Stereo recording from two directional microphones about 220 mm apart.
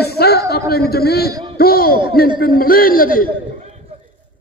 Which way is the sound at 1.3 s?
15° right (ahead or behind).